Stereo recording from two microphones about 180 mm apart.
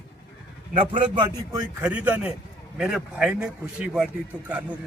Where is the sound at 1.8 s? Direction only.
10° right (ahead or behind).